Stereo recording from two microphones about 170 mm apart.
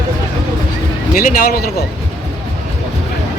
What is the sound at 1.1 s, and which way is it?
Speech, 55° left (ahead or behind).